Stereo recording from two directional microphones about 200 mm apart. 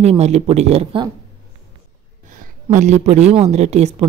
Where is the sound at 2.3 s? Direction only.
40° right (ahead or behind).